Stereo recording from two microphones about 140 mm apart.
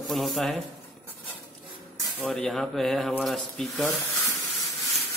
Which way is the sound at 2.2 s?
5° left (ahead or behind).